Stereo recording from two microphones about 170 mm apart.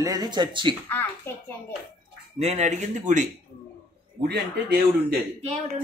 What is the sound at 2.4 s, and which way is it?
Speech, 40° right (ahead or behind).